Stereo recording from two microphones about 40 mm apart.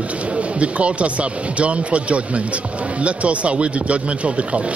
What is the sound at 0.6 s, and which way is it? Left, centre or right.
Speech, right.